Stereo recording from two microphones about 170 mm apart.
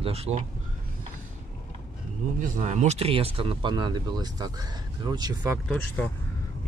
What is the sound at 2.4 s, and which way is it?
Speech, 45° right (ahead or behind).